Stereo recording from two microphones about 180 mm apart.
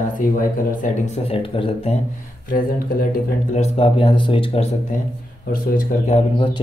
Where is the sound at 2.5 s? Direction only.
50° left (ahead or behind).